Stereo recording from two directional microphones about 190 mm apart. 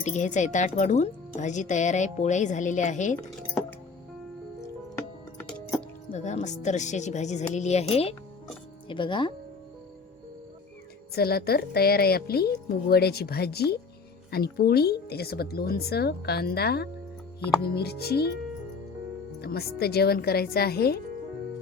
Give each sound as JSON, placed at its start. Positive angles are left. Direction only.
{"t": 0.0, "sound": "speech", "side_deg": 40}
{"t": 4.9, "sound": "music", "side_deg": 5}
{"t": 6.1, "sound": "speech", "side_deg": 35}
{"t": 11.1, "sound": "speech", "side_deg": 55}
{"t": 19.4, "sound": "speech", "side_deg": 55}